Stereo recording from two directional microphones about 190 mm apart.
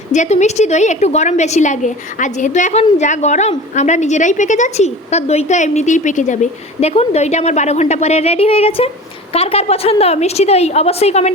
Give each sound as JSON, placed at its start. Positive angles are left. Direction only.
{"t": 0.1, "sound": "a woman's voice", "side_deg": 40}